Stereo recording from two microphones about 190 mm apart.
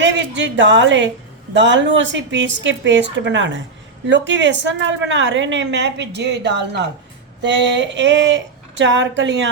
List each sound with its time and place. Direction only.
0.0 s a woman's voice: 70° right (ahead or behind)